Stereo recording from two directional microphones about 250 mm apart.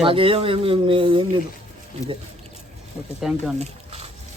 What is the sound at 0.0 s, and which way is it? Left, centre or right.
Speech, right.